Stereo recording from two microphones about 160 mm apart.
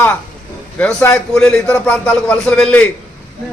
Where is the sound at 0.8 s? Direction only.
5° left (ahead or behind).